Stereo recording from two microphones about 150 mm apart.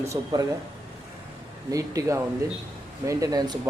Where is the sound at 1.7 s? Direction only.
20° right (ahead or behind).